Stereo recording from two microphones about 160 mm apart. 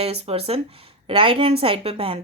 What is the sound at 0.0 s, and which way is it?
A woman's voice, 40° right (ahead or behind).